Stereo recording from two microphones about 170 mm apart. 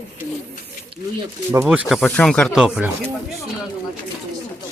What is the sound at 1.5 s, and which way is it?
Speech, 10° right (ahead or behind).